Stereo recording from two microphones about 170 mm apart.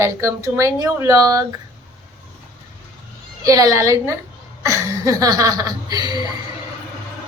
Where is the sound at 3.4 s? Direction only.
20° right (ahead or behind).